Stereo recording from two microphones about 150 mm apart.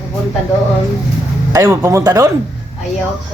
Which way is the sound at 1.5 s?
20° right (ahead or behind).